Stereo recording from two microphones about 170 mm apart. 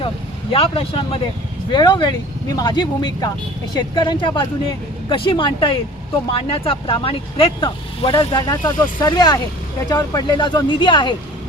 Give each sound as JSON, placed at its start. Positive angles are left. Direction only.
{"t": 0.5, "sound": "speech", "side_deg": 35}